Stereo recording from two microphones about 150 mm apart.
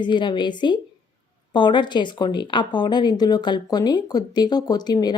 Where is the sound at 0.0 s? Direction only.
30° left (ahead or behind).